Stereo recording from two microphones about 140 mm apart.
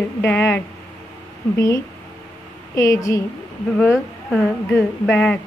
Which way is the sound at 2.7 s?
25° left (ahead or behind).